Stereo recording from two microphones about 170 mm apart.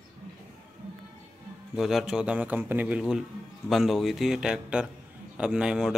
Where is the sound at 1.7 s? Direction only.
5° right (ahead or behind).